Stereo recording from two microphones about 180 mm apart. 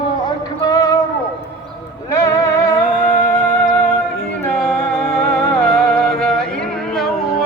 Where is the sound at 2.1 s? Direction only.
15° left (ahead or behind).